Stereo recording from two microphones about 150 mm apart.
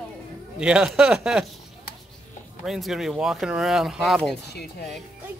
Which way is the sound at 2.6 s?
Centre (ahead or behind).